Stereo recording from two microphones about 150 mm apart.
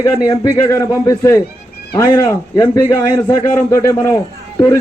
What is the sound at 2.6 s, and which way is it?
A man's voice, 20° left (ahead or behind).